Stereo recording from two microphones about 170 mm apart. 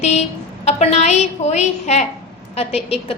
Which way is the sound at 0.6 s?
40° left (ahead or behind).